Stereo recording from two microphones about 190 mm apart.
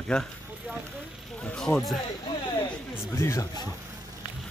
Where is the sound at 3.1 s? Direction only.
15° left (ahead or behind).